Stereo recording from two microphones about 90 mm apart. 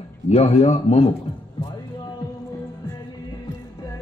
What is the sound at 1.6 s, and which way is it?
Music, 80° left.